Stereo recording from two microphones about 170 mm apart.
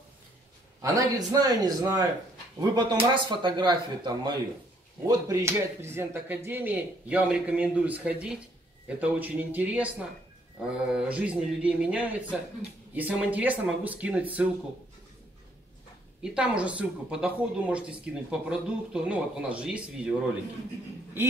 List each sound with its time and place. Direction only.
0.8 s speech: 20° right (ahead or behind)
16.2 s speech: 5° right (ahead or behind)